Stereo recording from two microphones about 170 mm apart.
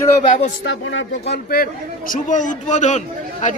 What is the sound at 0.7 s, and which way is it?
Speech, 80° left.